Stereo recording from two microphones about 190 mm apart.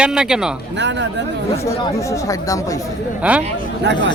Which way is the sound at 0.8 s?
70° right (ahead or behind).